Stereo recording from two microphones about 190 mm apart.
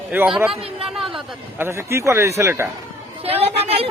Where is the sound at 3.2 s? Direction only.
30° right (ahead or behind).